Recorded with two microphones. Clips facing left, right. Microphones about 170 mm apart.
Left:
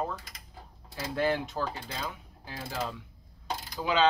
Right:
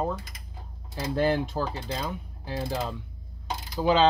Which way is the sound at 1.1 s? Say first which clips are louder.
Right 4 dB; 30° right (ahead or behind).